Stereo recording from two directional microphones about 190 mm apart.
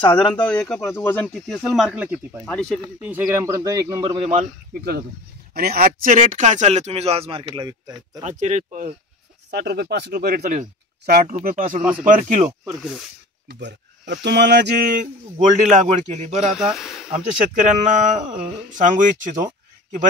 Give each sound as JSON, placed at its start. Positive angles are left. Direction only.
{"t": 0.0, "sound": "speech", "side_deg": 25}
{"t": 0.7, "sound": "speech", "side_deg": 10}
{"t": 1.2, "sound": "speech", "side_deg": 0}
{"t": 2.8, "sound": "a man's voice", "side_deg": -10}
{"t": 5.5, "sound": "speech", "side_deg": -55}
{"t": 8.2, "sound": "speech", "side_deg": -40}
{"t": 9.5, "sound": "speech", "side_deg": -60}
{"t": 13.5, "sound": "speech", "side_deg": -65}
{"t": 16.5, "sound": "speech", "side_deg": -5}
{"t": 17.1, "sound": "speech", "side_deg": -40}